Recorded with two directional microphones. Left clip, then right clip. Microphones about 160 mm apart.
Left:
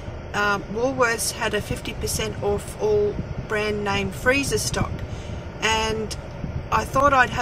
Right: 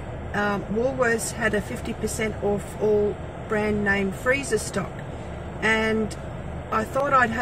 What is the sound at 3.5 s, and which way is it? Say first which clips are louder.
Speech: even; 5° left (ahead or behind).